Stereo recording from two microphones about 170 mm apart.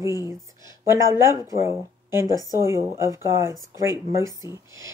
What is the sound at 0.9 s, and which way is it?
Speech, 15° right (ahead or behind).